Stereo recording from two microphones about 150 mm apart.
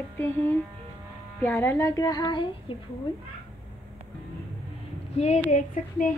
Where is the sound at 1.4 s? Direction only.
15° left (ahead or behind); by 2.4 s 30° left (ahead or behind).